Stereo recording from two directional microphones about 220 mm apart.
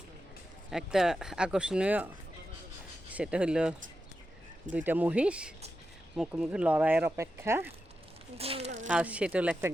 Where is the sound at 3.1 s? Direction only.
5° right (ahead or behind).